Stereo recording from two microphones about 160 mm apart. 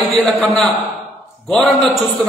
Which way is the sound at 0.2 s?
5° left (ahead or behind).